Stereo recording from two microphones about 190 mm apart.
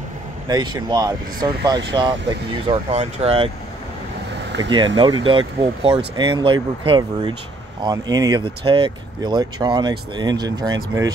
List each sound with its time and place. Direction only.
0.5 s speech: 20° right (ahead or behind)
2.9 s speech: 35° right (ahead or behind)
4.5 s a sound: 70° right (ahead or behind)
4.9 s speech: 25° right (ahead or behind)